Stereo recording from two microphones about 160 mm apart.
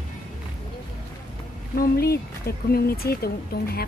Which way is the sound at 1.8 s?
75° left (ahead or behind).